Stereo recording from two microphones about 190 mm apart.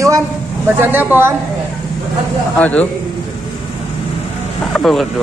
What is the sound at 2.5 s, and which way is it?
Speech, 10° left (ahead or behind).